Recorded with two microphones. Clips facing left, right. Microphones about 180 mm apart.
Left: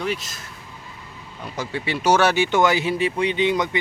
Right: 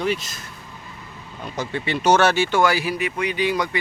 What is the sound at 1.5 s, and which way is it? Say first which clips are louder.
Speech: right 1 dB; 10° left (ahead or behind).